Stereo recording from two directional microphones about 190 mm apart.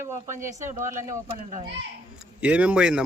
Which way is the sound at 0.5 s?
40° right (ahead or behind).